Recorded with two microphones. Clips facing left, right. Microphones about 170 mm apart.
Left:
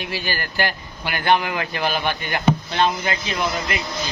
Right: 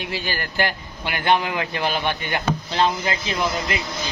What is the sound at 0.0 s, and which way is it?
A man's voice, 20° right (ahead or behind).